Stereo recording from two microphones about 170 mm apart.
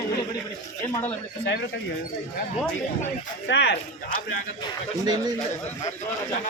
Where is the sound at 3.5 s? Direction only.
90° left.